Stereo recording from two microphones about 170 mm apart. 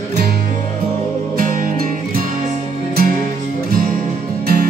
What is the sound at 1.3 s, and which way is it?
Music, 55° right (ahead or behind).